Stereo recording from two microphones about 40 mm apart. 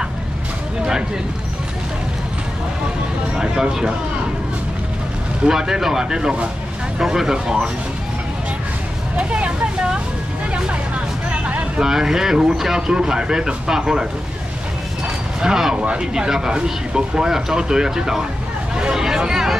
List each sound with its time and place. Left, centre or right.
5.5 s speech: centre
9.1 s speech: right
11.2 s vehicle: right
11.8 s speech: centre
15.4 s speech: centre
15.7 s speech: right